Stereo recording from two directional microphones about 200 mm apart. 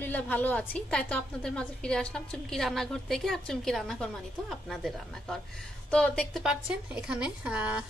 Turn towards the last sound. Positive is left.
turn(degrees=-5)  # may be behind; listen again after turning